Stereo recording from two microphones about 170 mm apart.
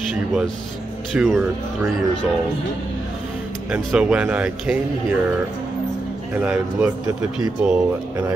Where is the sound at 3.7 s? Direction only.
5° right (ahead or behind).